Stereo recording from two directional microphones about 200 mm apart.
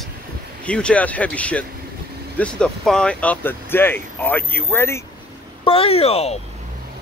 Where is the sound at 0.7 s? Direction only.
5° left (ahead or behind).